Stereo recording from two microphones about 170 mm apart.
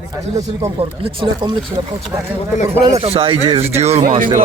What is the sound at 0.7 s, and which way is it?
Speech, 35° right (ahead or behind).